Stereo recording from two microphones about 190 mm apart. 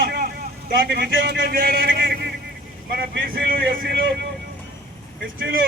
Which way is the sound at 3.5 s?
50° right (ahead or behind).